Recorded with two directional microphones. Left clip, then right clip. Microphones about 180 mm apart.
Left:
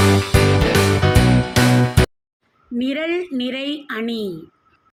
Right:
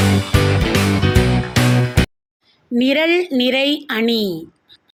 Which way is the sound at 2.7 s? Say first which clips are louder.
Right 7 dB; 20° right (ahead or behind).